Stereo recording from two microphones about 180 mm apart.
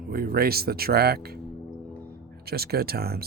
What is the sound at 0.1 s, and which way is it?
Speech, 55° right (ahead or behind).